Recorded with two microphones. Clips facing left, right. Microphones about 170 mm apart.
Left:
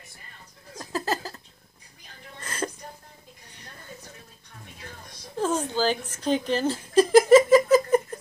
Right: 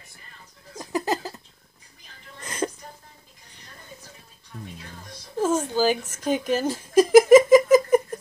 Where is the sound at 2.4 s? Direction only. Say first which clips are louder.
Right 3 dB; 15° right (ahead or behind).